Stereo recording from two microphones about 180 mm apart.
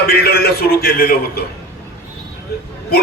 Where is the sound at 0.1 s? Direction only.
60° left (ahead or behind).